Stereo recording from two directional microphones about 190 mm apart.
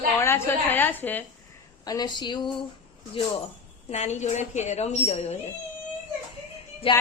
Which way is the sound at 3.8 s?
35° left (ahead or behind).